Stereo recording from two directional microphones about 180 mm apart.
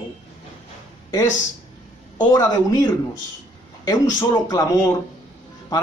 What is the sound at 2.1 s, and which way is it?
Speech, 20° left (ahead or behind).